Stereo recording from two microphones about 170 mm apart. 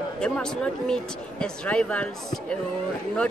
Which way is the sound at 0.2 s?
5° left (ahead or behind).